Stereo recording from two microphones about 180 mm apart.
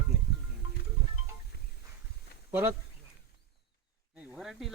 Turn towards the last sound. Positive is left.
turn(degrees=0)  # may be behind; listen again after turning